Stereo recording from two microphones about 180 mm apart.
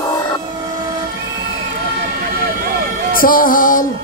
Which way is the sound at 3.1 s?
50° left (ahead or behind).